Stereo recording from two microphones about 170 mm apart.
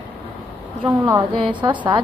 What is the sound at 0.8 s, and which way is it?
A woman's voice, 20° right (ahead or behind).